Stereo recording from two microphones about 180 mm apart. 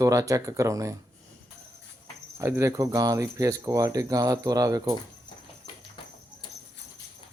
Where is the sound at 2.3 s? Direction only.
15° right (ahead or behind).